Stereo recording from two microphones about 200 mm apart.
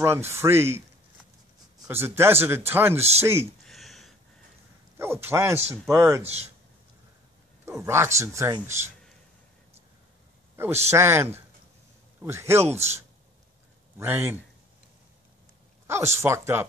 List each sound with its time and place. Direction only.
0.0 s a man's voice: 15° right (ahead or behind)
1.9 s a man's voice: 10° right (ahead or behind)
3.6 s a sound: centre (ahead or behind)
4.9 s a man's voice: 10° right (ahead or behind)
6.2 s speech: 30° right (ahead or behind)
7.6 s a man's voice: 15° right (ahead or behind)
10.5 s a sound: 10° right (ahead or behind)
10.9 s a man's voice: 10° right (ahead or behind)
13.9 s a man's voice: 10° right (ahead or behind)
15.9 s a man's voice: 15° right (ahead or behind)